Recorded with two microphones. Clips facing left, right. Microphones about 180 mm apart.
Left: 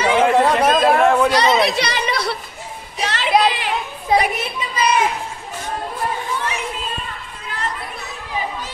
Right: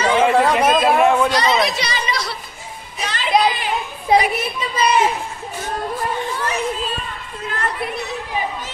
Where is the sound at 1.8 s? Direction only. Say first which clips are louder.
Left 3 dB; 65° left (ahead or behind).